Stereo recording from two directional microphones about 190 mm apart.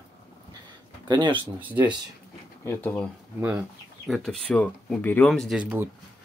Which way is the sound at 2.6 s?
10° left (ahead or behind).